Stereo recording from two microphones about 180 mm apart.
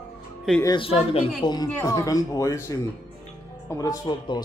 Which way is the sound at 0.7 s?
30° left (ahead or behind).